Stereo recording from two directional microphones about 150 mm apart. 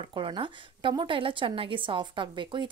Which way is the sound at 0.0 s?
35° right (ahead or behind).